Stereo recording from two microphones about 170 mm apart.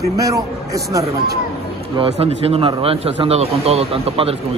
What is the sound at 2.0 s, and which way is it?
Speech, 35° right (ahead or behind).